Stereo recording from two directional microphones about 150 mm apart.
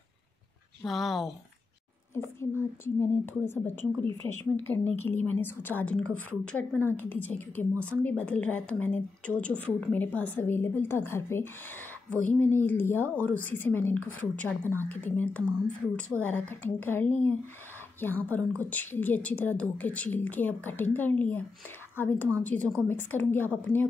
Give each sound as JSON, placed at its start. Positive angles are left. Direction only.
{"t": 0.8, "sound": "speech", "side_deg": 0}
{"t": 2.1, "sound": "a woman's voice", "side_deg": 15}
{"t": 14.6, "sound": "a woman's voice", "side_deg": -15}
{"t": 14.9, "sound": "a woman's voice", "side_deg": 10}